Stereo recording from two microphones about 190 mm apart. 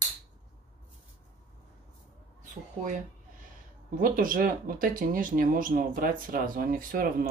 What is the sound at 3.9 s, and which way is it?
Speech, 45° right (ahead or behind).